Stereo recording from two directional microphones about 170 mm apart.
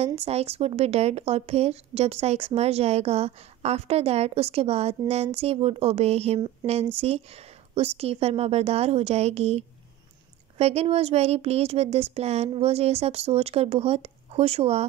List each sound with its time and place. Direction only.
0.0 s speech: 40° right (ahead or behind)